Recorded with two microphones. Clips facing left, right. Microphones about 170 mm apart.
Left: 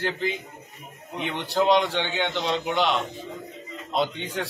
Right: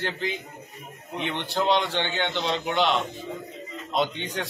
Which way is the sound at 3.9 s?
5° left (ahead or behind).